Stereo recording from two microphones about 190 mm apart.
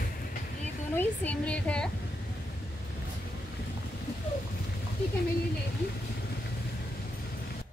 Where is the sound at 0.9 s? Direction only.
5° left (ahead or behind).